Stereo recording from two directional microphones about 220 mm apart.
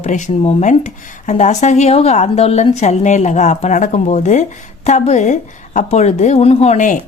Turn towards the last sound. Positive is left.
turn(degrees=30)  # may be behind; listen again after turning